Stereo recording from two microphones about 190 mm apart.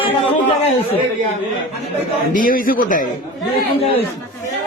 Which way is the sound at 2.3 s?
45° left (ahead or behind).